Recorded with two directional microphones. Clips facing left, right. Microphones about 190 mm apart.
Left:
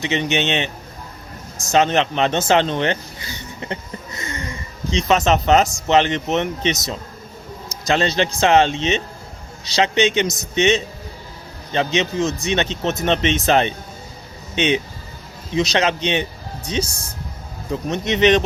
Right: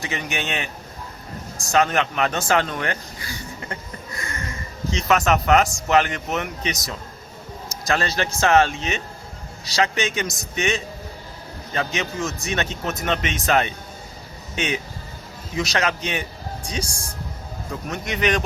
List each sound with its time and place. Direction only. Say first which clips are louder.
0.0 s speech: left 8 dB; 20° left (ahead or behind)
1.7 s speech: left 3 dB; 25° left (ahead or behind)
2.5 s a sound: left 5 dB; 25° left (ahead or behind)
5.9 s speech: left 4 dB; 25° left (ahead or behind)
10.2 s a man's voice: left 6 dB; centre (ahead or behind)
10.5 s speech: left 7 dB; 20° left (ahead or behind)